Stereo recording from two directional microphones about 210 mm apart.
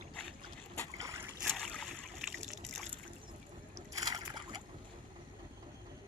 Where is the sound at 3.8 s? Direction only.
15° right (ahead or behind).